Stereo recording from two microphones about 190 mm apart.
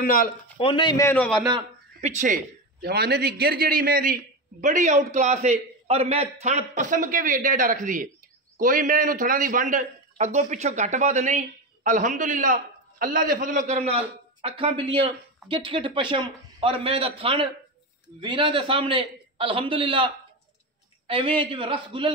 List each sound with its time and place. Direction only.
0.0 s speech: 50° left (ahead or behind)
0.6 s a man's voice: 30° left (ahead or behind); by 1.4 s 5° left (ahead or behind)
1.5 s a man's voice: 35° right (ahead or behind)
21.1 s a man's voice: 25° right (ahead or behind)